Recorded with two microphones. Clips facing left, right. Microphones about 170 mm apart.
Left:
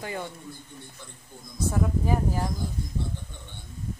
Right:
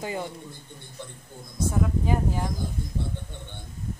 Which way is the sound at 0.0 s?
20° right (ahead or behind).